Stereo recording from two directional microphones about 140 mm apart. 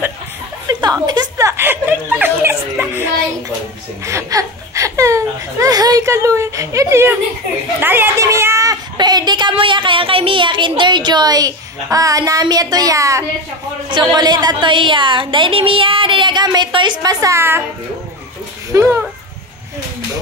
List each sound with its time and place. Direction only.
0.7 s a sound: 30° right (ahead or behind)
1.6 s a child's voice: 15° right (ahead or behind)
8.9 s a woman's voice: 30° right (ahead or behind)
18.7 s speech: 20° right (ahead or behind)